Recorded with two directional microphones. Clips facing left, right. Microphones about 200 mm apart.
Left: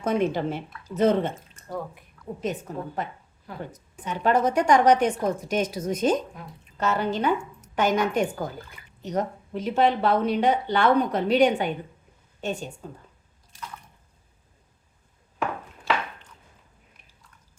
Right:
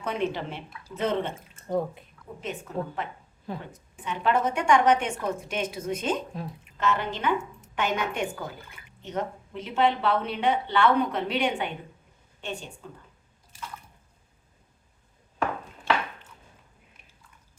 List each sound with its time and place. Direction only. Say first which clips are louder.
0.0 s a woman's voice: left 5 dB; 45° left (ahead or behind)
2.4 s a woman's voice: left 2 dB; 40° left (ahead or behind)
15.4 s chopping: even; centre (ahead or behind)